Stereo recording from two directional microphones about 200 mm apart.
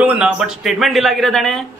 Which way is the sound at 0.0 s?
5° right (ahead or behind).